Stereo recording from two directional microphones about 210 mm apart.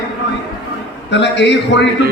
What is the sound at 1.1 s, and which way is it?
Speech, 55° left (ahead or behind).